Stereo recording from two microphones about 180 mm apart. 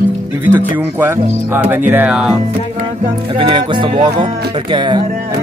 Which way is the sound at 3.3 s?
25° right (ahead or behind).